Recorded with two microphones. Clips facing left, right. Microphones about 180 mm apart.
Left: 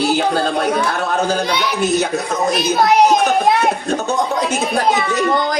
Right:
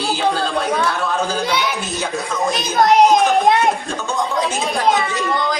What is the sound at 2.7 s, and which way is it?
Speech, 5° left (ahead or behind).